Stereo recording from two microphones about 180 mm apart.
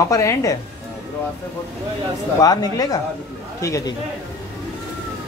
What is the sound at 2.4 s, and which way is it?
A man's voice, 20° left (ahead or behind).